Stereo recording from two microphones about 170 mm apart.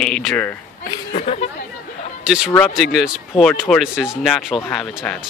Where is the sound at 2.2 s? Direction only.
5° right (ahead or behind).